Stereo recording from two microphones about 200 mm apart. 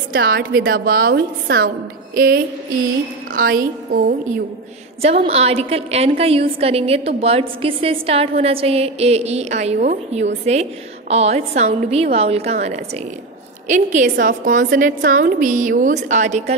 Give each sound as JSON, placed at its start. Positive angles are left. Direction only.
{"t": 0.1, "sound": "a woman's voice", "side_deg": -50}
{"t": 5.0, "sound": "a woman's voice", "side_deg": -30}